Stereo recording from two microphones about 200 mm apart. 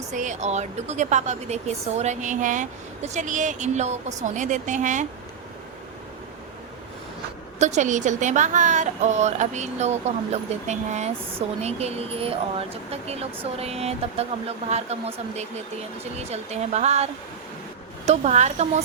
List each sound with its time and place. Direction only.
0.1 s speech: 35° right (ahead or behind)
7.6 s speech: 35° right (ahead or behind)